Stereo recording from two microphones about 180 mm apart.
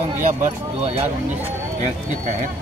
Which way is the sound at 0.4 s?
35° right (ahead or behind).